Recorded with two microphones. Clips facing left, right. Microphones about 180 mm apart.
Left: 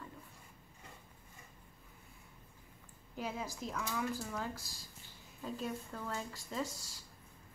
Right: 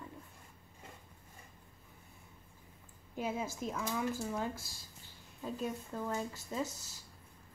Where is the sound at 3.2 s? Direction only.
20° right (ahead or behind).